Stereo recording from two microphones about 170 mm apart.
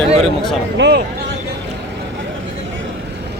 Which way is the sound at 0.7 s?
90° right.